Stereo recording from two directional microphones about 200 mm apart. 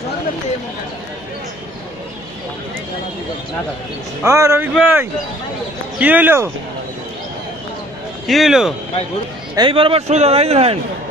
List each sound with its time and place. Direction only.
4.2 s a man's voice: 15° right (ahead or behind)
8.3 s speech: centre (ahead or behind)
9.6 s a man's voice: 25° right (ahead or behind)